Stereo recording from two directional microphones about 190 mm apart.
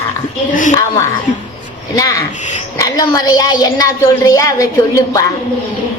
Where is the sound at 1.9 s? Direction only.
20° left (ahead or behind).